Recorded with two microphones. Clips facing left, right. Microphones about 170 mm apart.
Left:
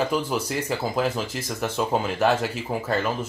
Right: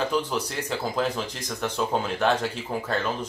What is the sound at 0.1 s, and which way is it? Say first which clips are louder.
Speech: left 2 dB; 10° left (ahead or behind).